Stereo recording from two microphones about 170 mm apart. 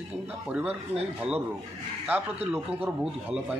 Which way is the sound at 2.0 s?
10° right (ahead or behind).